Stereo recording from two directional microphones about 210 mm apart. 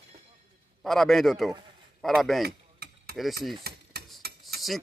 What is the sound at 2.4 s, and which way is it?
Mechanisms, 50° right (ahead or behind).